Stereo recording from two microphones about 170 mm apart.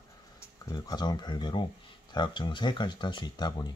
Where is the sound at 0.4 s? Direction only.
20° left (ahead or behind).